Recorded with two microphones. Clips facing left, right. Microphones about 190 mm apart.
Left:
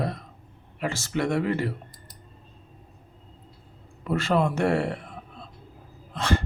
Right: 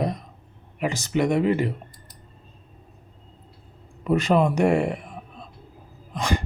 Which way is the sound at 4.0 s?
15° right (ahead or behind).